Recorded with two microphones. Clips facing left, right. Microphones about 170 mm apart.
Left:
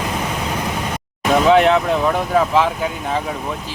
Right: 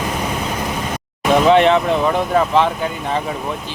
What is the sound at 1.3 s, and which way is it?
Speech, centre (ahead or behind).